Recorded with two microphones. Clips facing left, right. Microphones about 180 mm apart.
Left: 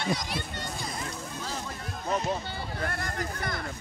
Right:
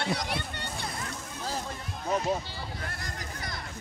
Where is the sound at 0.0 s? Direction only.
60° right (ahead or behind).